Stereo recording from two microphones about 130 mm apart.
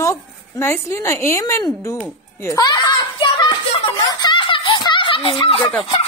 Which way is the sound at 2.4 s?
25° left (ahead or behind).